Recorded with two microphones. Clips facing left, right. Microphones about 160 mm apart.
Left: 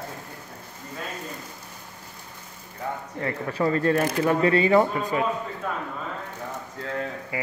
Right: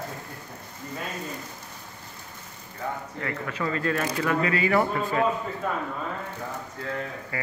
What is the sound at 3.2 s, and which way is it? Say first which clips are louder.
Speech: left 6 dB; 35° left (ahead or behind).